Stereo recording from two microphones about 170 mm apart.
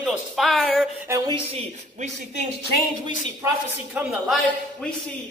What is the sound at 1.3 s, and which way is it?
Speech, 35° right (ahead or behind).